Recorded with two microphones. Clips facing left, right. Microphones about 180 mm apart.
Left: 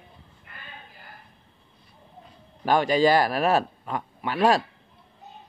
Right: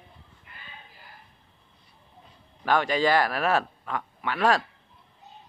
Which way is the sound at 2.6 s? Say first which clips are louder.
Left 3 dB; 40° left (ahead or behind).